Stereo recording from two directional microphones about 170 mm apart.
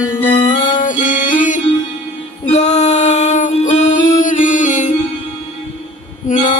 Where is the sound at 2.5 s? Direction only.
45° left (ahead or behind).